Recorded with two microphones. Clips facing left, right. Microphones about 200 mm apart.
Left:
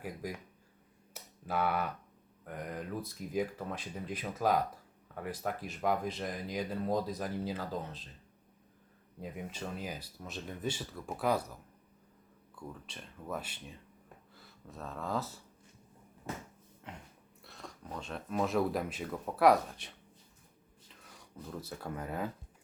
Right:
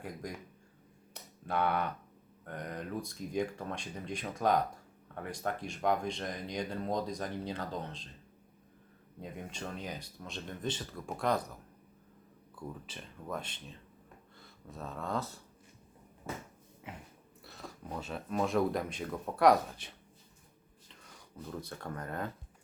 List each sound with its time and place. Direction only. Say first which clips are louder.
0.0 s speech: left 1 dB; 5° left (ahead or behind)
1.1 s a sound: right 1 dB; 5° left (ahead or behind)
2.4 s speech: even; 5° left (ahead or behind)
9.2 s speech: left 1 dB; 5° left (ahead or behind)
12.5 s speech: right 2 dB; 5° right (ahead or behind)
16.9 s speech: right 1 dB; 5° right (ahead or behind)